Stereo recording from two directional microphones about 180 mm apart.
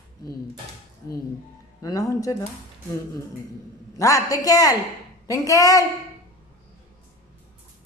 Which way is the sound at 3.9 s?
20° left (ahead or behind).